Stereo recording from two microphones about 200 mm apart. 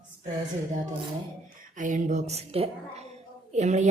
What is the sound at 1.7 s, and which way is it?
A woman's voice, 40° right (ahead or behind).